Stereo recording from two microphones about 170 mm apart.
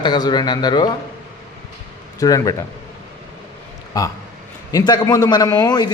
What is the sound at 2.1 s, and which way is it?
Speech, 20° left (ahead or behind).